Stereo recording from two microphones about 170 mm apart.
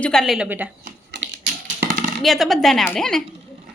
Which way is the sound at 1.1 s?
90° right.